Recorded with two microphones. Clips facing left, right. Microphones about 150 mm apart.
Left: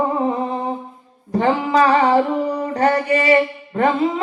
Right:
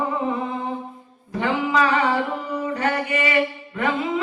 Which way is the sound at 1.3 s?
35° left (ahead or behind).